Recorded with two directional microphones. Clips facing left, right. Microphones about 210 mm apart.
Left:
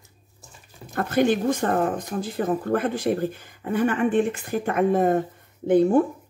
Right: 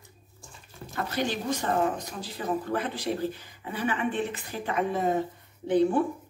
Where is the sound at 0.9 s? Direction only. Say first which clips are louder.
Left 9 dB; 50° left (ahead or behind).